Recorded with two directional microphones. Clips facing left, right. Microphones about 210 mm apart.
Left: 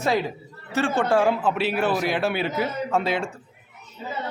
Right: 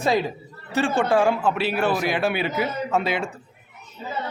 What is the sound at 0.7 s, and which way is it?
Speech, 15° right (ahead or behind).